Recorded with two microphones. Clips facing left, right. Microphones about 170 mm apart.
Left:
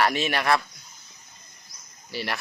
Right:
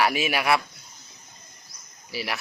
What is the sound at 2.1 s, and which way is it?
Speech, 5° right (ahead or behind).